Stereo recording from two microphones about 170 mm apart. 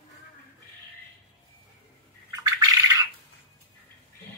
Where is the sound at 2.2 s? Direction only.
20° right (ahead or behind).